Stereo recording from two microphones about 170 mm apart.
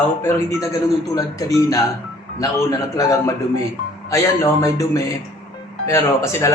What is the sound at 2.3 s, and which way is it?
A man's voice, 20° left (ahead or behind).